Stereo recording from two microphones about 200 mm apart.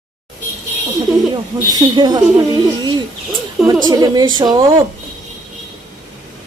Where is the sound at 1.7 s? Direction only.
20° right (ahead or behind).